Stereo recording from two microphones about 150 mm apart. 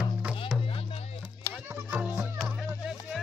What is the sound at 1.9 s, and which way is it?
Music, 5° right (ahead or behind).